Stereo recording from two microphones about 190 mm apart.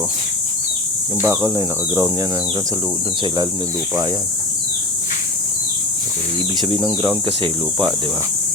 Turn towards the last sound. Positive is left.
turn(degrees=-25)  # may be behind; listen again after turning